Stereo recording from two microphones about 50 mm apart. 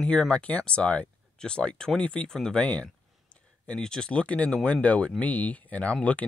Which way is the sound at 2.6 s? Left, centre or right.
Left.